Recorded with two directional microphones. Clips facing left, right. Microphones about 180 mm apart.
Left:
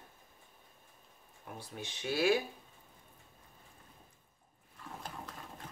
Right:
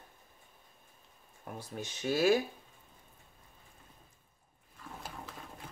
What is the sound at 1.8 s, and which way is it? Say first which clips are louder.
Speech: right 3 dB; 45° right (ahead or behind).